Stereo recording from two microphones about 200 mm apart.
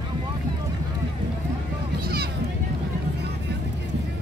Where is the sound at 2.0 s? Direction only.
50° right (ahead or behind).